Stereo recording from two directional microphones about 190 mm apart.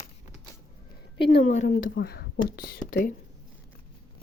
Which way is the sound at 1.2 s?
75° left (ahead or behind).